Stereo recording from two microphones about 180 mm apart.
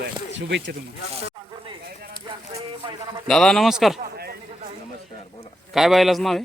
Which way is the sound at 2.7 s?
30° right (ahead or behind).